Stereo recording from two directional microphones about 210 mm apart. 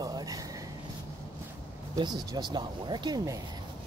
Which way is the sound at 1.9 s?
20° right (ahead or behind).